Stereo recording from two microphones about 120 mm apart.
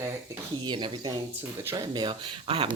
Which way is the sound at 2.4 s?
50° right (ahead or behind).